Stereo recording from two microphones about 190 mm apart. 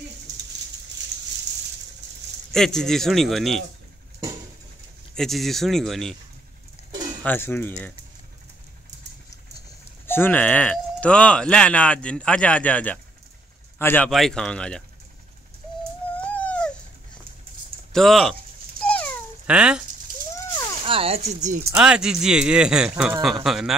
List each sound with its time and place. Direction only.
2.5 s speech: centre (ahead or behind)
5.1 s speech: centre (ahead or behind)
7.2 s speech: 10° left (ahead or behind)
10.0 s speech: 10° left (ahead or behind)
16.2 s a sound: 10° left (ahead or behind)
17.9 s speech: centre (ahead or behind)
19.4 s speech: 5° right (ahead or behind)
20.8 s speech: 30° right (ahead or behind)
21.7 s speech: 5° right (ahead or behind)